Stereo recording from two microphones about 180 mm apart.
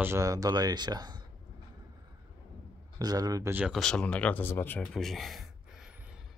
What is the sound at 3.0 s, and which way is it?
Speech, 20° right (ahead or behind).